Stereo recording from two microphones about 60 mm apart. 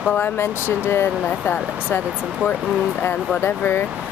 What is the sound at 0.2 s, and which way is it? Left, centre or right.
Speech, left.